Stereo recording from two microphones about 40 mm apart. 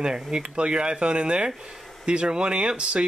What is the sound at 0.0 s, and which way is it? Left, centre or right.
Speech, centre.